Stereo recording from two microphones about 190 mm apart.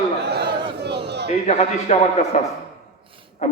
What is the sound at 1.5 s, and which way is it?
A man's voice, 35° left (ahead or behind).